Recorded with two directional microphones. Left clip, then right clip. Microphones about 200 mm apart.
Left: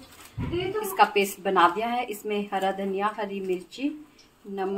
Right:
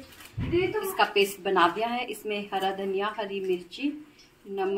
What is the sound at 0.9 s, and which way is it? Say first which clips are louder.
A woman's voice: left 4 dB; 40° left (ahead or behind).